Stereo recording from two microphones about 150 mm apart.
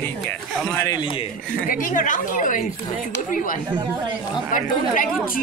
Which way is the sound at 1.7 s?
60° left (ahead or behind).